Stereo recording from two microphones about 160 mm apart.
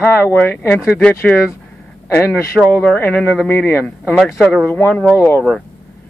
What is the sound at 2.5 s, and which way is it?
Speech, 10° left (ahead or behind).